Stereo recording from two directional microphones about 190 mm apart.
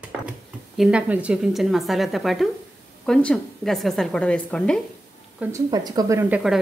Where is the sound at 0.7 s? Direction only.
5° right (ahead or behind).